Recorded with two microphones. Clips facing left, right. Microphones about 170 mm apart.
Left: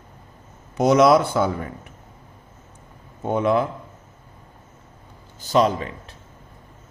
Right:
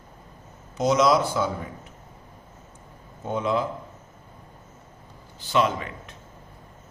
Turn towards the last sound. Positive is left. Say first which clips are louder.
# left 4 dB
turn(degrees=35)  # may be behind; listen again after turning